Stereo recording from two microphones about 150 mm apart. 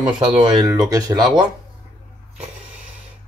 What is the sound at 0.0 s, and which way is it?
Speech, 30° right (ahead or behind).